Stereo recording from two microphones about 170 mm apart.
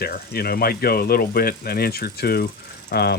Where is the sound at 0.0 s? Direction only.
65° left (ahead or behind).